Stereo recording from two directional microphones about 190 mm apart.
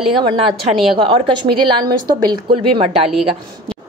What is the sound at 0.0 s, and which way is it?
A woman's voice, 25° right (ahead or behind).